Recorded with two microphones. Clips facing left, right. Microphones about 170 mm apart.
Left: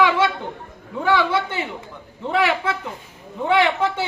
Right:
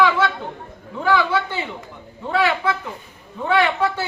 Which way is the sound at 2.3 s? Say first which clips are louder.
Right 1 dB; 20° left (ahead or behind).